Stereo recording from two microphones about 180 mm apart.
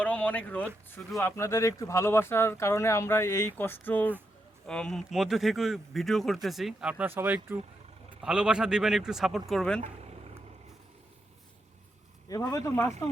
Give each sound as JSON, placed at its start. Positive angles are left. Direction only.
{"t": 0.0, "sound": "a sound", "side_deg": 10}
{"t": 1.2, "sound": "speech", "side_deg": 15}
{"t": 9.8, "sound": "vehicle", "side_deg": -35}
{"t": 12.5, "sound": "speech", "side_deg": 20}